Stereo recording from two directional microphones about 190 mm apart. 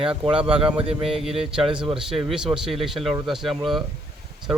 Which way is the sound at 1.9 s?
5° right (ahead or behind).